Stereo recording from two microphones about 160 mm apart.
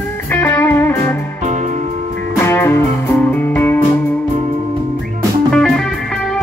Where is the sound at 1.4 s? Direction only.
50° right (ahead or behind).